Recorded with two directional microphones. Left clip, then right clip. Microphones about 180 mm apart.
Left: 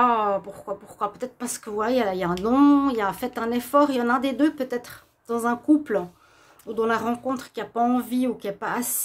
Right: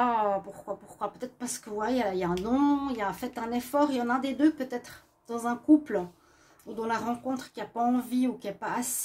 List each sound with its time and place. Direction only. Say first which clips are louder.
0.0 s speech: left 6 dB; 25° left (ahead or behind)